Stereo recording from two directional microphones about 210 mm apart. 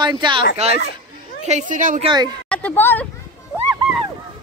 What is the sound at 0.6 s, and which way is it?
Speech, 30° right (ahead or behind).